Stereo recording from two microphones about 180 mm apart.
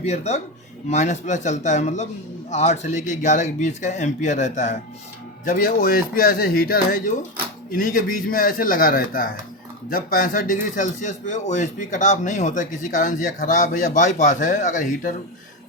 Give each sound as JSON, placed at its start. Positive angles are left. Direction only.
{"t": 0.0, "sound": "speech", "side_deg": 35}